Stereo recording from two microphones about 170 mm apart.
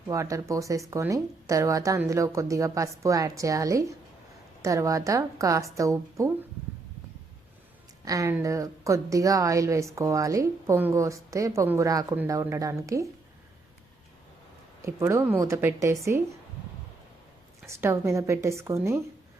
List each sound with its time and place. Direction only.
0.1 s speech: 20° right (ahead or behind)
8.0 s a woman's voice: 20° right (ahead or behind)
14.8 s a woman's voice: 15° right (ahead or behind)
17.7 s a woman's voice: 15° right (ahead or behind)